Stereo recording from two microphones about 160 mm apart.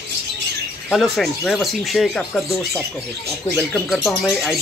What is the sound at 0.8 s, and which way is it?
Speech, centre (ahead or behind).